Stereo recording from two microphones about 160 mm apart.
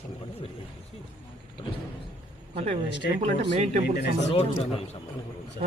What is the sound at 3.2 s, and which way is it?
Speech, 50° right (ahead or behind).